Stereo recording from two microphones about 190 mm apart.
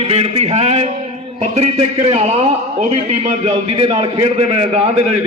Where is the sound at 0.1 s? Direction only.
35° right (ahead or behind).